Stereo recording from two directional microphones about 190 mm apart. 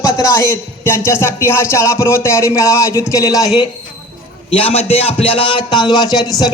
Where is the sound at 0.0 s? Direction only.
15° left (ahead or behind).